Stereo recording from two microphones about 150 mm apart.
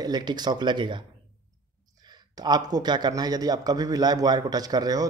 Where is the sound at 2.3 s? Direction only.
25° right (ahead or behind).